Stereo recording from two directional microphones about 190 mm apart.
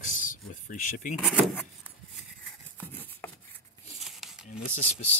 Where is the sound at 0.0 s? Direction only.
45° left (ahead or behind).